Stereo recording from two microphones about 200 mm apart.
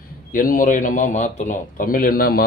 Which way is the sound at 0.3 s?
45° left (ahead or behind).